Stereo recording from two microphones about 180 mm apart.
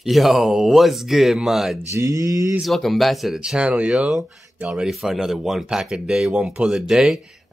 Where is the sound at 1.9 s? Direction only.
15° right (ahead or behind).